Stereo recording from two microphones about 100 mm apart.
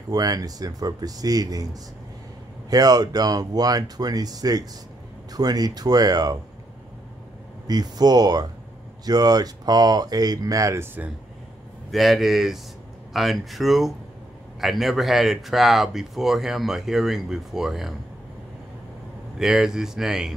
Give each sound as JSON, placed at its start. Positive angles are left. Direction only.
{"t": 0.1, "sound": "speech", "side_deg": -40}
{"t": 7.6, "sound": "speech", "side_deg": -40}
{"t": 11.9, "sound": "speech", "side_deg": 0}
{"t": 19.3, "sound": "speech", "side_deg": -5}